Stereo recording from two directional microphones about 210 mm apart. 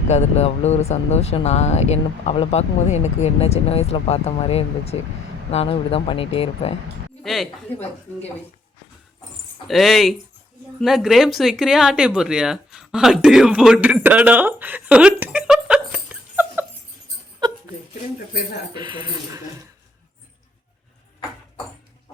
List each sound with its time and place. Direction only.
0.1 s speech: 30° left (ahead or behind)
7.2 s a woman's voice: centre (ahead or behind)
9.6 s a woman's voice: centre (ahead or behind)
17.4 s hiccup: 20° right (ahead or behind)
18.7 s speech: 20° right (ahead or behind)